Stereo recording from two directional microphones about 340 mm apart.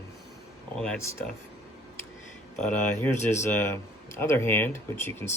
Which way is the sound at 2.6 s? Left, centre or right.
Centre.